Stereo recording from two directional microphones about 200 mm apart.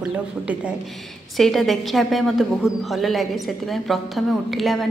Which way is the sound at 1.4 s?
Centre (ahead or behind).